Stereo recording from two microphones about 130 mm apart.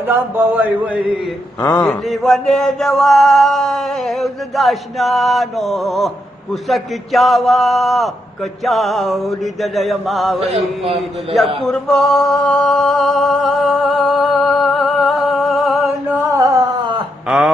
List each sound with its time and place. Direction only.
0.1 s a man's voice: 15° right (ahead or behind)
1.6 s a man's voice: 20° left (ahead or behind)
2.0 s male singing: centre (ahead or behind)
10.8 s a man's voice: 50° right (ahead or behind)
11.6 s male singing: 5° left (ahead or behind)
16.3 s a sound: 25° right (ahead or behind)